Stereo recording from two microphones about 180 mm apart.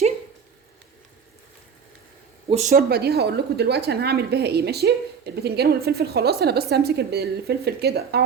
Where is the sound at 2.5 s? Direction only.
40° right (ahead or behind).